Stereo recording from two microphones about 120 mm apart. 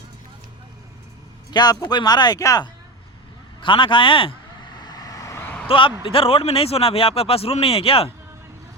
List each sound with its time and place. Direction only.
1.5 s speech: 35° left (ahead or behind)
3.6 s vehicle: 45° left (ahead or behind); by 5.6 s 15° left (ahead or behind)
5.6 s speech: 45° left (ahead or behind)